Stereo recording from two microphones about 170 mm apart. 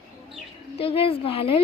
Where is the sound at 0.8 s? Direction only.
35° left (ahead or behind).